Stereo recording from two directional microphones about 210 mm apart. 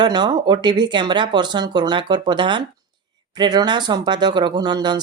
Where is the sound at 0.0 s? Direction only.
20° right (ahead or behind).